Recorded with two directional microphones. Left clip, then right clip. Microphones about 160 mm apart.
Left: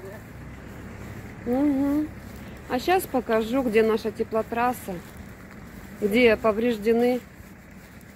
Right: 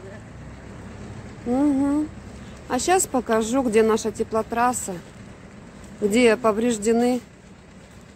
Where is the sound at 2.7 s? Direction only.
20° right (ahead or behind).